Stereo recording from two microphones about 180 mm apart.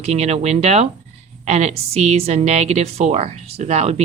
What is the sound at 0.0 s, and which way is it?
A woman's voice, 35° right (ahead or behind).